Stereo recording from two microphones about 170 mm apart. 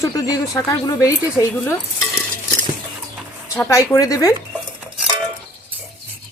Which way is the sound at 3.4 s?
15° left (ahead or behind).